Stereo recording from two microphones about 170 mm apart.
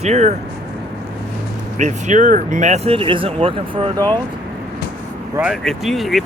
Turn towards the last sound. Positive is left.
turn(degrees=0)  # may be behind; listen again after turning